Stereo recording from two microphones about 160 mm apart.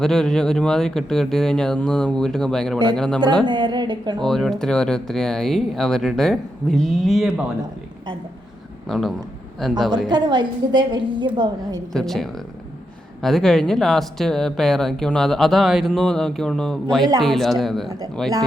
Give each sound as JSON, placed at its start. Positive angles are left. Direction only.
{"t": 0.0, "sound": "speech", "side_deg": 5}
{"t": 3.4, "sound": "a woman's voice", "side_deg": -30}
{"t": 4.2, "sound": "speech", "side_deg": 0}
{"t": 8.9, "sound": "speech", "side_deg": 0}
{"t": 10.1, "sound": "a woman's voice", "side_deg": -25}
{"t": 11.9, "sound": "speech", "side_deg": 0}